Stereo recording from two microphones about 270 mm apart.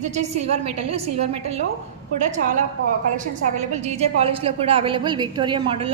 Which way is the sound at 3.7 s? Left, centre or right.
Right.